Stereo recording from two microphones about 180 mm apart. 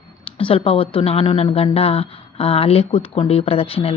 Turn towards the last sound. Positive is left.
turn(degrees=35)  # may be behind; listen again after turning